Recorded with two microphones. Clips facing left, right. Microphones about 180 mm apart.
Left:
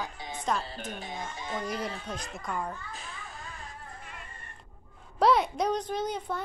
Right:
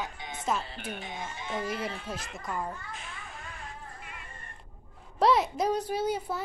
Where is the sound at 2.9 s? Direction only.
35° left (ahead or behind).